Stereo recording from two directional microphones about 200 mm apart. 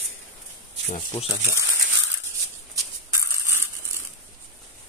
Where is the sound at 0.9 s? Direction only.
30° left (ahead or behind).